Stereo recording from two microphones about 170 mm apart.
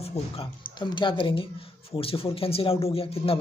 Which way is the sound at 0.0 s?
35° left (ahead or behind).